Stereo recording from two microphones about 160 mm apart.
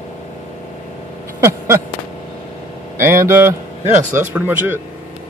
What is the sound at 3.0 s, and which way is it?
A man's voice, 15° right (ahead or behind).